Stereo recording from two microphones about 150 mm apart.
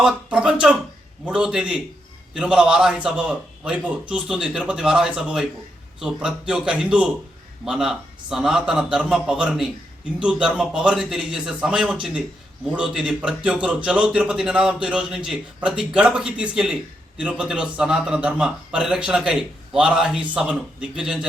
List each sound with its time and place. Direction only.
0.0 s a man's voice: 5° right (ahead or behind)